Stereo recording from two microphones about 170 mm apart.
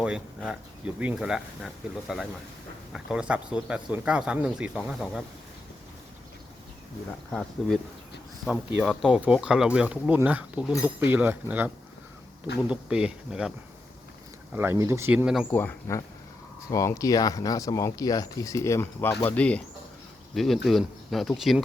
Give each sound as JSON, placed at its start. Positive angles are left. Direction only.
{"t": 0.0, "sound": "speech", "side_deg": -5}
{"t": 7.6, "sound": "speech", "side_deg": 5}
{"t": 14.5, "sound": "speech", "side_deg": -15}
{"t": 15.5, "sound": "speech", "side_deg": 15}